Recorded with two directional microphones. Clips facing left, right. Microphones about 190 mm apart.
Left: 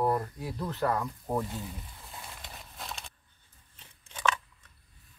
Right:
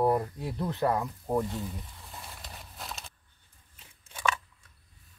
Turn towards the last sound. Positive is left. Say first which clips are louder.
# left 1 dB
turn(degrees=-10)  # may be behind; listen again after turning